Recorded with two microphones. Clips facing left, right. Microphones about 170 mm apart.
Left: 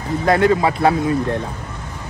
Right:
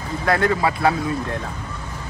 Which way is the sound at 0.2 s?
25° left (ahead or behind).